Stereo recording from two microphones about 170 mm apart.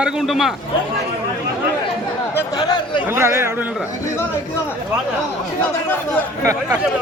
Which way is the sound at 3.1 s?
15° right (ahead or behind).